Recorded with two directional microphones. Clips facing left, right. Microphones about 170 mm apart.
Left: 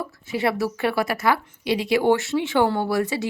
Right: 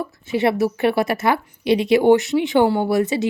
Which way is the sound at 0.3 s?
25° right (ahead or behind).